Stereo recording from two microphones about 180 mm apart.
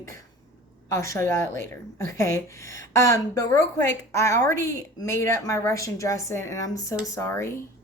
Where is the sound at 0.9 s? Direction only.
15° left (ahead or behind).